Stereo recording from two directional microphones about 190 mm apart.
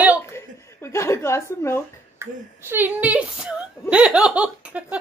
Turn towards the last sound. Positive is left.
turn(degrees=-5)  # may be behind; listen again after turning